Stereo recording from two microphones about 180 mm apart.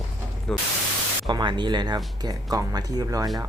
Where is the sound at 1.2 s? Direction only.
25° right (ahead or behind).